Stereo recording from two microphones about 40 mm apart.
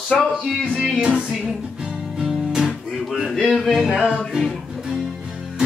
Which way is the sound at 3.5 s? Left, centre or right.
Centre.